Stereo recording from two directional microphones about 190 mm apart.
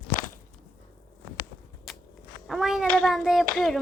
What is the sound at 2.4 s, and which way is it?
A woman's voice, centre (ahead or behind).